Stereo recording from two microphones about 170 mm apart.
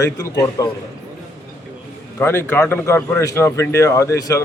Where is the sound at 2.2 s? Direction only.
15° left (ahead or behind).